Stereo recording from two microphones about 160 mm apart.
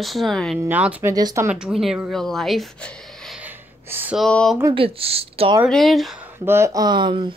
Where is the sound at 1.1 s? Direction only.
20° right (ahead or behind).